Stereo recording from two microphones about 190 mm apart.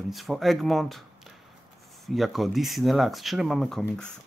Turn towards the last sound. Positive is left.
turn(degrees=5)  # may be behind; listen again after turning